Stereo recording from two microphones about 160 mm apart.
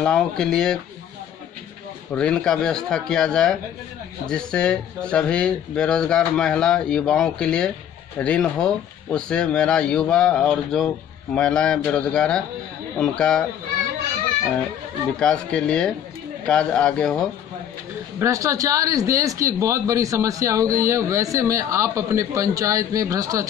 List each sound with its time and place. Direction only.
0.0 s speech: 5° left (ahead or behind)
2.1 s speech: 5° left (ahead or behind)
15.1 s speech: 5° left (ahead or behind)
18.2 s speech: 20° right (ahead or behind)